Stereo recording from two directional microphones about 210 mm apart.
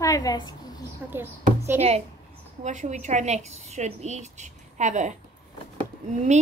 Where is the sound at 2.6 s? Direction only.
35° right (ahead or behind).